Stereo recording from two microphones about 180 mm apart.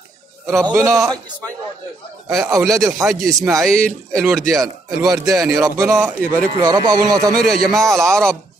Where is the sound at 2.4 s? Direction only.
20° right (ahead or behind).